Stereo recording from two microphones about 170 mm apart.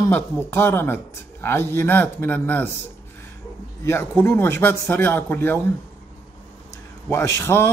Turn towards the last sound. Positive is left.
turn(degrees=15)  # may be behind; listen again after turning